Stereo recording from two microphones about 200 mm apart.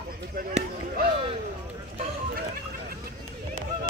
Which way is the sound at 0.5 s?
30° right (ahead or behind).